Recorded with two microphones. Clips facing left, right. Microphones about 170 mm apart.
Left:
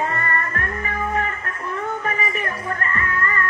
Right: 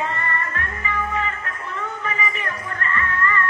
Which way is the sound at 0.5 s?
45° left (ahead or behind).